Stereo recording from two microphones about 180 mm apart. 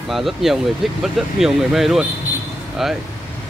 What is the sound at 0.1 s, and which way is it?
Speech, centre (ahead or behind).